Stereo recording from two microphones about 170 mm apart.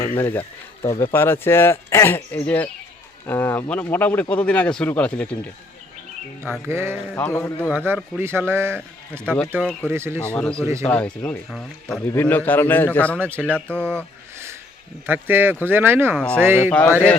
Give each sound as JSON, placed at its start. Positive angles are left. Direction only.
{"t": 0.2, "sound": "speech", "side_deg": 10}
{"t": 6.7, "sound": "a man's voice", "side_deg": -15}
{"t": 7.2, "sound": "speech", "side_deg": 10}
{"t": 8.2, "sound": "a man's voice", "side_deg": -15}
{"t": 9.2, "sound": "speech", "side_deg": 5}
{"t": 9.9, "sound": "a man's voice", "side_deg": -15}
{"t": 10.3, "sound": "speech", "side_deg": 5}
{"t": 10.6, "sound": "a man's voice", "side_deg": -15}
{"t": 10.8, "sound": "speech", "side_deg": 10}
{"t": 13.1, "sound": "a man's voice", "side_deg": -10}
{"t": 13.5, "sound": "speech", "side_deg": 10}
{"t": 15.0, "sound": "a man's voice", "side_deg": -10}
{"t": 16.1, "sound": "speech", "side_deg": 5}
{"t": 16.4, "sound": "a man's voice", "side_deg": -15}